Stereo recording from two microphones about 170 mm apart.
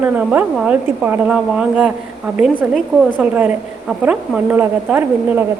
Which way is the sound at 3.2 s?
10° right (ahead or behind).